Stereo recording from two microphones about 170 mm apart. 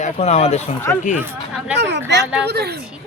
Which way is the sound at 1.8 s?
90° right.